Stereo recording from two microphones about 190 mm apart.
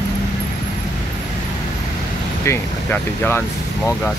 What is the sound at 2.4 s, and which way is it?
Speech, 10° left (ahead or behind).